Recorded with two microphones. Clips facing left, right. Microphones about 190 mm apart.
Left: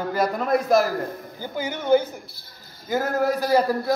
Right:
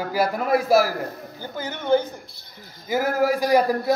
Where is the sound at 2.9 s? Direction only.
10° right (ahead or behind).